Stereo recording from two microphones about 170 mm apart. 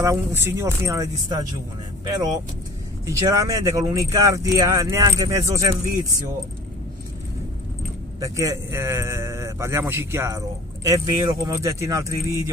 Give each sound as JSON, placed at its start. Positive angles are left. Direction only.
{"t": 0.0, "sound": "speech", "side_deg": -15}
{"t": 8.2, "sound": "speech", "side_deg": -20}